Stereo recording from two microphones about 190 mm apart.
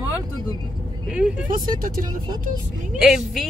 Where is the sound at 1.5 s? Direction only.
50° right (ahead or behind).